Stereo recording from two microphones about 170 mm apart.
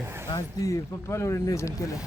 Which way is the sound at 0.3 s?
20° left (ahead or behind).